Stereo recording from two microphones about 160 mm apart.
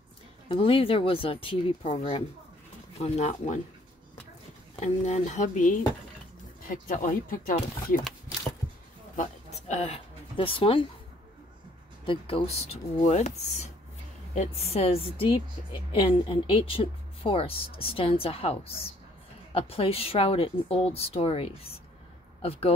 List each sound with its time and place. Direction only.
0.5 s a woman's voice: 35° left (ahead or behind)
4.7 s speech: 45° left (ahead or behind)
9.1 s a sound: 50° left (ahead or behind)
12.1 s a woman's voice: 35° left (ahead or behind)
13.0 s a woman's voice: 45° left (ahead or behind)